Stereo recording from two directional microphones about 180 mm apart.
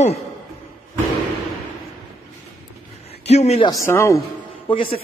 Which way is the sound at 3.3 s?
35° left (ahead or behind).